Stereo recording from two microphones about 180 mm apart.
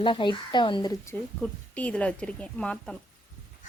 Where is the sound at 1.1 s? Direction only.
15° left (ahead or behind).